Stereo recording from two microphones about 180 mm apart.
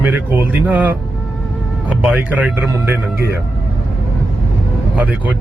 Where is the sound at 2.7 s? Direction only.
15° right (ahead or behind).